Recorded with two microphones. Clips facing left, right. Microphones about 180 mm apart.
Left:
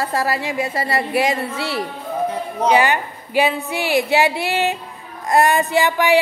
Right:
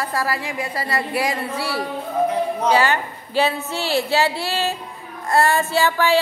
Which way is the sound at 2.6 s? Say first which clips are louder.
Left 4 dB; 15° left (ahead or behind).